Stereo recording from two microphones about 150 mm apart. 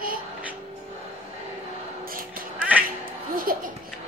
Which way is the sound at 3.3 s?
70° right (ahead or behind).